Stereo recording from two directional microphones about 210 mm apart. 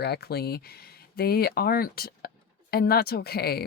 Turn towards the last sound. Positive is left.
turn(degrees=50)  # may be behind; listen again after turning